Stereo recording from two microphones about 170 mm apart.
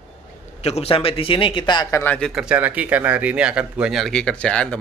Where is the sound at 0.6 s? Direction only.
40° left (ahead or behind).